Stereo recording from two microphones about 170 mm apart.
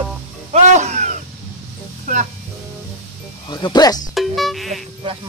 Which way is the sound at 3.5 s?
25° left (ahead or behind).